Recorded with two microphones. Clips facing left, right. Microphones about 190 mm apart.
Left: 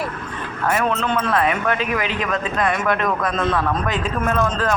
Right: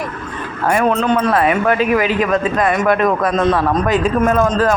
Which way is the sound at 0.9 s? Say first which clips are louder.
Right 6 dB; 40° right (ahead or behind).